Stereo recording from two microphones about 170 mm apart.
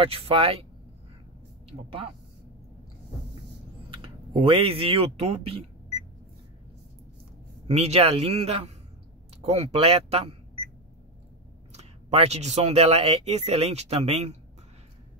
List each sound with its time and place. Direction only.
0.0 s speech: 35° right (ahead or behind)
1.7 s speech: 30° right (ahead or behind)
3.9 s speech: 30° right (ahead or behind)
7.6 s speech: 40° right (ahead or behind)
11.7 s speech: 40° right (ahead or behind)